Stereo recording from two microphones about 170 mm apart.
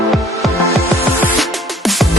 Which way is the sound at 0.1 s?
Centre (ahead or behind).